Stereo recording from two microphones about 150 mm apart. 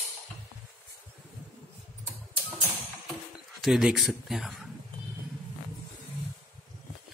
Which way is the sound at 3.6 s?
5° right (ahead or behind).